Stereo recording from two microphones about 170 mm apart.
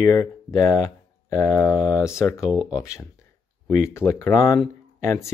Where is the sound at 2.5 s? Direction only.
5° right (ahead or behind).